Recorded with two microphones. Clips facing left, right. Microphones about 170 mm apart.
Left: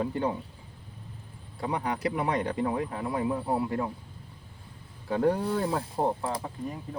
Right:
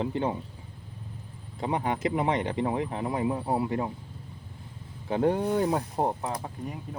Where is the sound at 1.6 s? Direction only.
20° right (ahead or behind).